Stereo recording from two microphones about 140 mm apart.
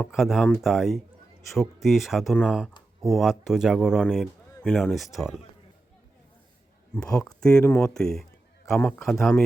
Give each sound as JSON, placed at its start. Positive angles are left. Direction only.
{"t": 0.0, "sound": "a man's voice", "side_deg": 0}
{"t": 6.9, "sound": "speech", "side_deg": 5}
{"t": 7.9, "sound": "a man's voice", "side_deg": 5}